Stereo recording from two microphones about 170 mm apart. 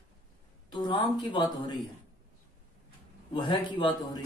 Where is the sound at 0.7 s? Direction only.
25° left (ahead or behind).